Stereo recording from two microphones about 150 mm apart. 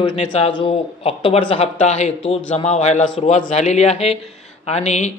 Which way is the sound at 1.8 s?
50° left (ahead or behind).